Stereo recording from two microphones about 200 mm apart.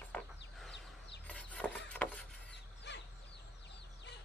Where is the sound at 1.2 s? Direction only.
5° left (ahead or behind).